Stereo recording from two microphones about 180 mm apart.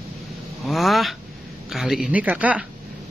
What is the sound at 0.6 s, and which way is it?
A man's voice, centre (ahead or behind).